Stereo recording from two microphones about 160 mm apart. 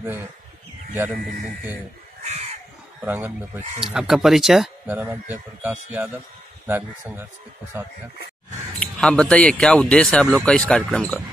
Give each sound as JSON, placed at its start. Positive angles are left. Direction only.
{"t": 3.0, "sound": "a man's voice", "side_deg": -10}
{"t": 4.9, "sound": "speech", "side_deg": -10}
{"t": 8.7, "sound": "a man's voice", "side_deg": 5}